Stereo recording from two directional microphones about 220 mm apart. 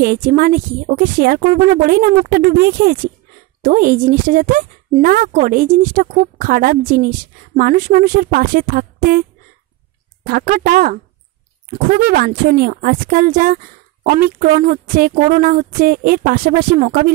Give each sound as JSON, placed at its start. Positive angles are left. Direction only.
{"t": 0.0, "sound": "speech", "side_deg": -40}
{"t": 10.2, "sound": "speech", "side_deg": -45}